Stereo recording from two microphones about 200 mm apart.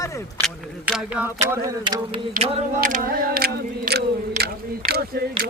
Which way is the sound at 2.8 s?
45° right (ahead or behind).